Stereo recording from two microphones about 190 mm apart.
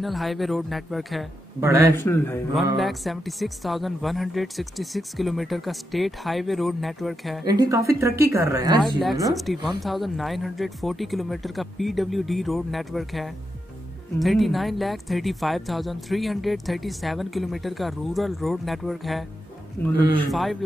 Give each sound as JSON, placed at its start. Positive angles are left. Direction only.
{"t": 0.0, "sound": "speech", "side_deg": 0}
{"t": 1.6, "sound": "a woman's voice", "side_deg": -15}
{"t": 2.0, "sound": "a man's voice", "side_deg": 10}
{"t": 2.8, "sound": "speech", "side_deg": 0}
{"t": 7.4, "sound": "a woman's voice", "side_deg": -20}
{"t": 9.0, "sound": "a man's voice", "side_deg": 0}